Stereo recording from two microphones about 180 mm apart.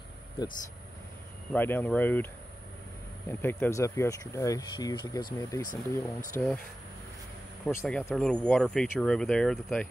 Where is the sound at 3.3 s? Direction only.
10° left (ahead or behind).